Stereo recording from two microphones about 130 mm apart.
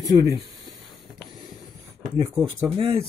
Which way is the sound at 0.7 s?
Centre (ahead or behind).